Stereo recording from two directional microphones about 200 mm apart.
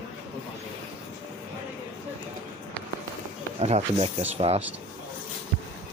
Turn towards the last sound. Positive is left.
turn(degrees=-30)  # may be behind; listen again after turning